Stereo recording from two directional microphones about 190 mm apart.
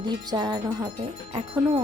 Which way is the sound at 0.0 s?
25° right (ahead or behind).